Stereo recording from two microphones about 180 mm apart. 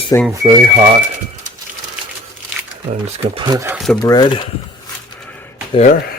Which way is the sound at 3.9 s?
20° left (ahead or behind).